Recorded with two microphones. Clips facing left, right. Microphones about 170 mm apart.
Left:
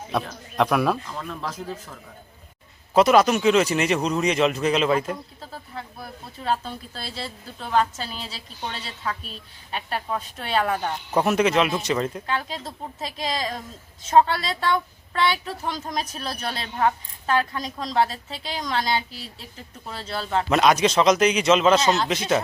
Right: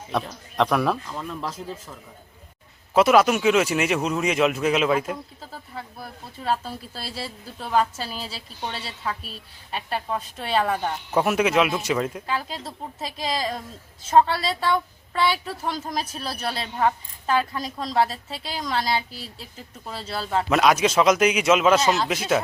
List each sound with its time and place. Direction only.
0.1 s a woman's voice: 5° left (ahead or behind)
2.9 s a woman's voice: 5° right (ahead or behind)